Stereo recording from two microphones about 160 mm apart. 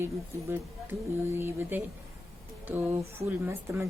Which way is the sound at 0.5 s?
15° right (ahead or behind).